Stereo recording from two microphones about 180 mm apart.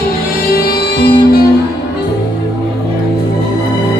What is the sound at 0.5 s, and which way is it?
Music, 60° left (ahead or behind).